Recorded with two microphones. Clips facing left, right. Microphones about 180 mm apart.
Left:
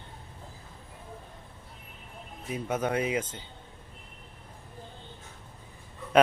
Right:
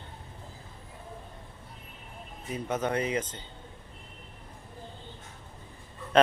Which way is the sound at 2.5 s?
10° left (ahead or behind).